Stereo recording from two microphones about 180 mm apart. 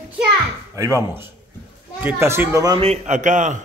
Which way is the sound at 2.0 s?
15° right (ahead or behind).